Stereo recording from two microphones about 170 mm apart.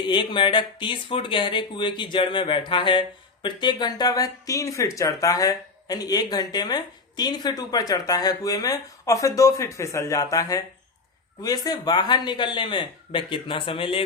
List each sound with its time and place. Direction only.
0.1 s speech: 30° left (ahead or behind)